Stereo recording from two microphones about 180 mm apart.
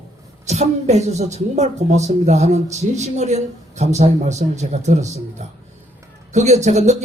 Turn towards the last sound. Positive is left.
turn(degrees=-40)  # may be behind; listen again after turning